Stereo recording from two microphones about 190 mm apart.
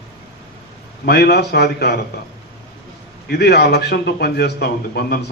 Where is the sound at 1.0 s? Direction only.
60° left (ahead or behind).